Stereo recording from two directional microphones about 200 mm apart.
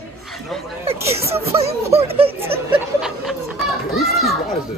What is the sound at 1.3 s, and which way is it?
Speech, 30° right (ahead or behind).